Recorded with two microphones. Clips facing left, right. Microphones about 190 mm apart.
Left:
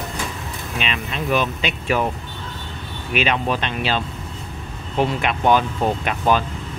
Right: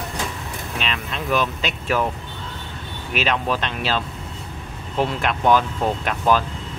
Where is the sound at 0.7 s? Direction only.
5° left (ahead or behind).